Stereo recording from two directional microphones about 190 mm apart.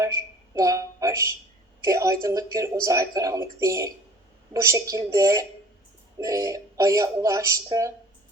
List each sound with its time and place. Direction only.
0.0 s a woman's voice: 15° right (ahead or behind)